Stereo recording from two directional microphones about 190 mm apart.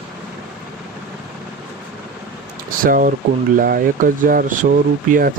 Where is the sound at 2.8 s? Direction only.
45° right (ahead or behind).